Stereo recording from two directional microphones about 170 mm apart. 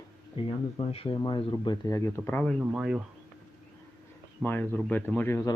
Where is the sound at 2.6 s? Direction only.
5° right (ahead or behind).